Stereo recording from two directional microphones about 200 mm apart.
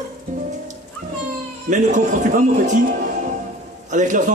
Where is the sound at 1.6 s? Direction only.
40° right (ahead or behind).